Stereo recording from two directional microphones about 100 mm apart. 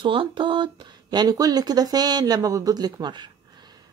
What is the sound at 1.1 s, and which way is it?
Speech, 45° right (ahead or behind).